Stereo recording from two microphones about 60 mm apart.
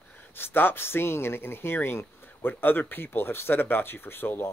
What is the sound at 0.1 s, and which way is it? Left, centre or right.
A man's voice, left.